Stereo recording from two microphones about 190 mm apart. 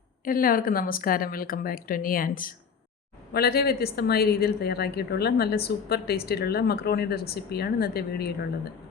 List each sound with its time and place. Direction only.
0.3 s a woman's voice: 50° left (ahead or behind)